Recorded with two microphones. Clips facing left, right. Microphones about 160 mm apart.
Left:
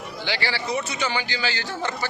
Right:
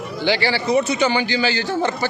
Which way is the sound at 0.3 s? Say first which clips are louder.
Right 8 dB; 25° right (ahead or behind).